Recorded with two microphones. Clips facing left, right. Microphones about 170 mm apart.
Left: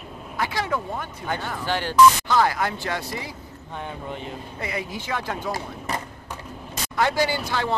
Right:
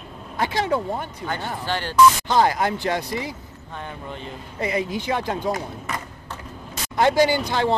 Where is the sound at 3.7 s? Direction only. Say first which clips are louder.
Left 1 dB; 15° left (ahead or behind).